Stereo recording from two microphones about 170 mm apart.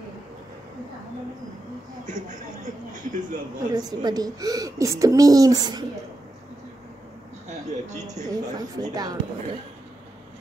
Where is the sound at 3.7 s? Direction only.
25° right (ahead or behind).